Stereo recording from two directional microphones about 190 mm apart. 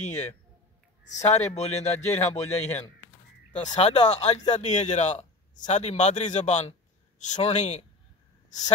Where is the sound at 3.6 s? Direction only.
35° left (ahead or behind).